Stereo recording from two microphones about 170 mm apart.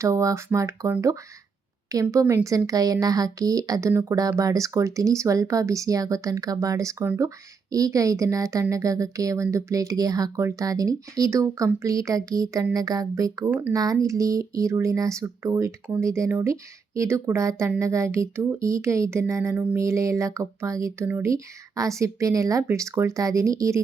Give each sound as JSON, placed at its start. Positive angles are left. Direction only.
{"t": 0.0, "sound": "a woman's voice", "side_deg": -20}
{"t": 13.7, "sound": "speech", "side_deg": -20}